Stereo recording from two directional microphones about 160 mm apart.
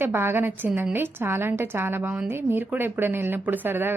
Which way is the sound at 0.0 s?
15° right (ahead or behind).